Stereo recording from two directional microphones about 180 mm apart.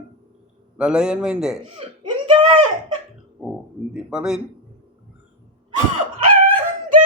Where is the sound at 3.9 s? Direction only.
5° right (ahead or behind).